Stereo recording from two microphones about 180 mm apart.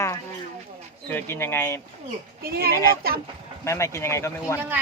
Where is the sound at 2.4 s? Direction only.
60° right (ahead or behind).